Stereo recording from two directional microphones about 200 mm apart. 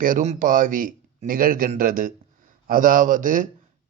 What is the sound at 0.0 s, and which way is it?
Speech, 40° right (ahead or behind).